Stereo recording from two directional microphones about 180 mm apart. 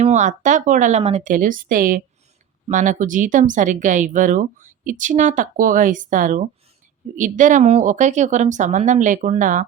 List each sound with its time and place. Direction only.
0.0 s speech: 40° right (ahead or behind)